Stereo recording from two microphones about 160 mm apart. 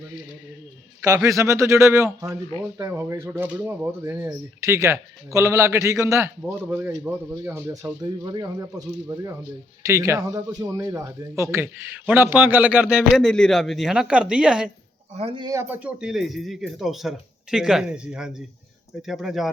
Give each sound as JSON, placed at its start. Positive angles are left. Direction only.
{"t": 1.0, "sound": "speech", "side_deg": -20}
{"t": 15.2, "sound": "speech", "side_deg": -35}
{"t": 15.4, "sound": "speech", "side_deg": -20}
{"t": 15.8, "sound": "speech", "side_deg": -5}